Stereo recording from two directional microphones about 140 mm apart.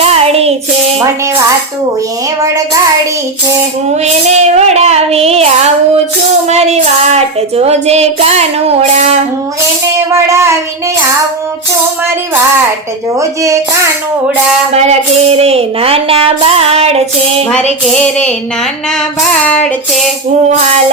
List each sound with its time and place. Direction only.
0.0 s music: 45° right (ahead or behind)
3.9 s child singing: 50° right (ahead or behind)
10.1 s child singing: 20° right (ahead or behind)
13.1 s child singing: 20° right (ahead or behind)
14.7 s child singing: 50° right (ahead or behind)
17.8 s female singing: 5° left (ahead or behind)
19.3 s child singing: 10° left (ahead or behind)